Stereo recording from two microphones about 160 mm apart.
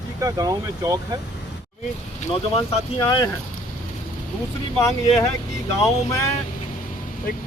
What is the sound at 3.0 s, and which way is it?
Speech, 25° left (ahead or behind).